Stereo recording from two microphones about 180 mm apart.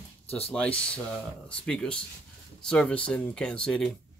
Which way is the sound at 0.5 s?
5° left (ahead or behind).